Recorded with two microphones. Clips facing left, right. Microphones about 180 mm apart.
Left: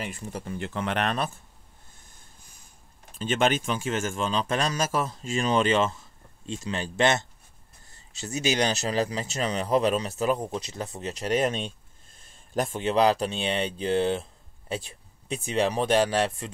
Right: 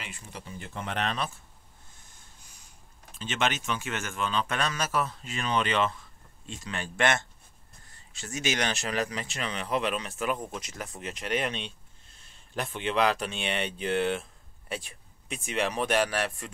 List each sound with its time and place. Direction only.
0.0 s speech: 50° left (ahead or behind)
3.2 s speech: 45° left (ahead or behind); by 7.2 s 25° left (ahead or behind)
8.4 s speech: 35° left (ahead or behind)